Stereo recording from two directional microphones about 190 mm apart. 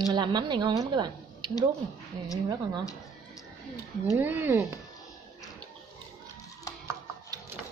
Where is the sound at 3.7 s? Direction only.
10° right (ahead or behind).